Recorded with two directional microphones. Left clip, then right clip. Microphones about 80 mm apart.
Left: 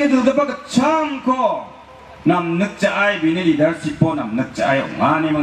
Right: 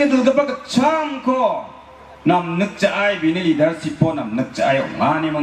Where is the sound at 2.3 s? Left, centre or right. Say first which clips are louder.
Even; right.